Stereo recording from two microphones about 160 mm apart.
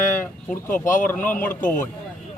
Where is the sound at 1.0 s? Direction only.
10° left (ahead or behind).